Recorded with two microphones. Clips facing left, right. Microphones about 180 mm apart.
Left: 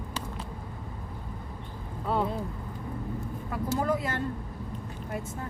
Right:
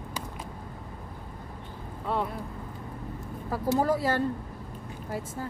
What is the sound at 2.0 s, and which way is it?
Speech, centre (ahead or behind).